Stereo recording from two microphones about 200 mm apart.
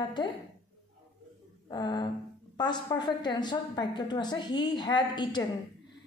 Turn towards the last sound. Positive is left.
turn(degrees=20)  # may be behind; listen again after turning